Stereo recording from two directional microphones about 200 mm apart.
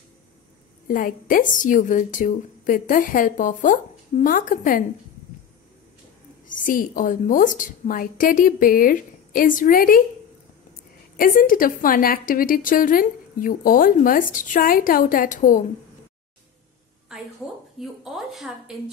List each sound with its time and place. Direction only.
0.8 s a woman's voice: 45° left (ahead or behind)
6.4 s a woman's voice: 40° left (ahead or behind)
11.1 s a woman's voice: 45° left (ahead or behind)
17.1 s a sound: 5° right (ahead or behind)
17.7 s speech: centre (ahead or behind)